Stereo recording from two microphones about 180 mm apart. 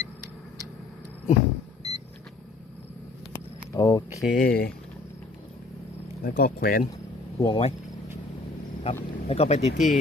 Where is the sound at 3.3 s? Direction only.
15° left (ahead or behind).